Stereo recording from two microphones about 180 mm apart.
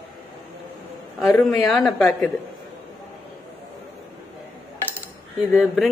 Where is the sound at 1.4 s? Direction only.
Centre (ahead or behind).